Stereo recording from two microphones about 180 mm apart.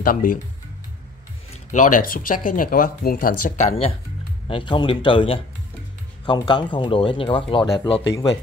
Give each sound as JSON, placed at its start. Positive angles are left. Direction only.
{"t": 0.0, "sound": "speech", "side_deg": 50}
{"t": 1.5, "sound": "speech", "side_deg": 45}